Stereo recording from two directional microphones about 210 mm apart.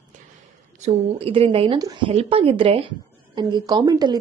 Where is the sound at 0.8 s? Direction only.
30° right (ahead or behind).